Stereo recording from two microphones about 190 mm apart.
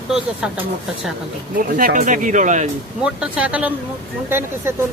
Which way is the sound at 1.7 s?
45° right (ahead or behind).